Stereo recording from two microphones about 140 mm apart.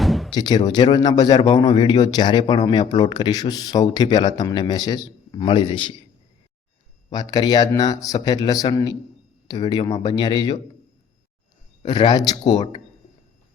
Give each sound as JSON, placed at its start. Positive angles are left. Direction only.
{"t": 0.0, "sound": "music", "side_deg": 0}
{"t": 0.3, "sound": "a man's voice", "side_deg": 30}
{"t": 7.1, "sound": "a man's voice", "side_deg": 30}
{"t": 11.9, "sound": "a man's voice", "side_deg": 35}